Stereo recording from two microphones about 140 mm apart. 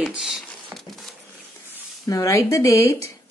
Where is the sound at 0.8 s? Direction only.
Centre (ahead or behind).